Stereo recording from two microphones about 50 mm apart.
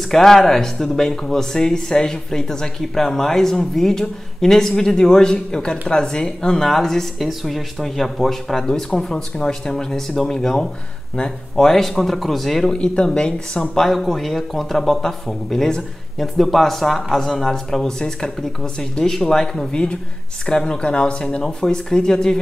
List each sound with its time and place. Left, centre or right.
0.1 s speech: centre
12.7 s speech: centre
13.6 s speech: centre
19.7 s speech: centre